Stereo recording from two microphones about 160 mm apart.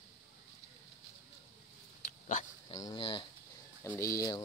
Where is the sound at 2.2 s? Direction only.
50° left (ahead or behind).